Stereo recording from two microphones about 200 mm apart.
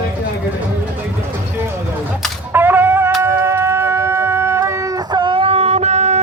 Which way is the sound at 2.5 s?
10° right (ahead or behind).